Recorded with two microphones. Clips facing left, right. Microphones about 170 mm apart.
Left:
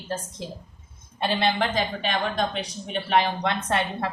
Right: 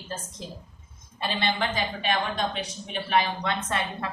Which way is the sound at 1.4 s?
35° left (ahead or behind).